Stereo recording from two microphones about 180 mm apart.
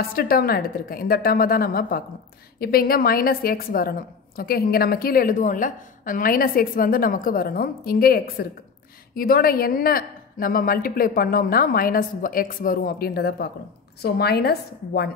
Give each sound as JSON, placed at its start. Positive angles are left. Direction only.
{"t": 0.1, "sound": "a woman's voice", "side_deg": 55}